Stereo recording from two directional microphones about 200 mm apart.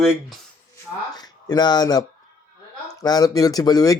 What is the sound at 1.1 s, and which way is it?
Speech, 20° left (ahead or behind).